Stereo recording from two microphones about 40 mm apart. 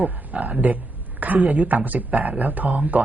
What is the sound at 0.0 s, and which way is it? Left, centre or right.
A man's voice, right.